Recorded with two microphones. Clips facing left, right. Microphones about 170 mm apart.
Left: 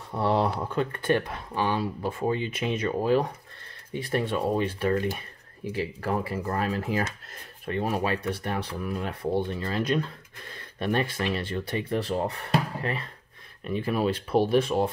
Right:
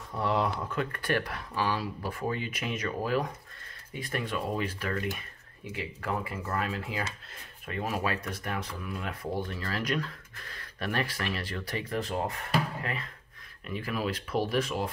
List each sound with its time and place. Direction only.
0.1 s speech: 30° left (ahead or behind)
7.6 s speech: 30° left (ahead or behind)